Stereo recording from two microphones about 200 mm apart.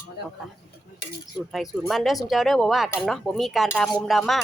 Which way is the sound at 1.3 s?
Centre (ahead or behind).